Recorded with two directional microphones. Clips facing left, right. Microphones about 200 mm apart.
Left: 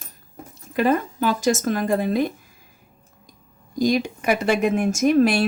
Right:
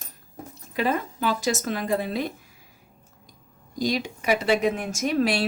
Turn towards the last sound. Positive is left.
turn(degrees=50)  # may be behind; listen again after turning